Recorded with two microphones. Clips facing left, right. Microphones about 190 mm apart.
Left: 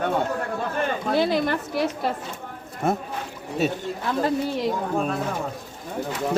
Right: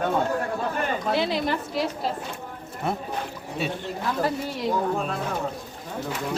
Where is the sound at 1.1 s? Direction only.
50° left (ahead or behind).